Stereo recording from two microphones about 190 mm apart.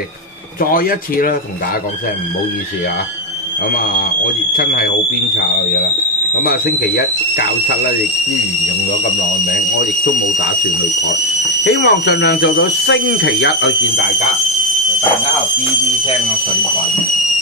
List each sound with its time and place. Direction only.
0.6 s speech: 50° left (ahead or behind)
6.4 s speech: 50° left (ahead or behind)
11.6 s speech: 65° left (ahead or behind)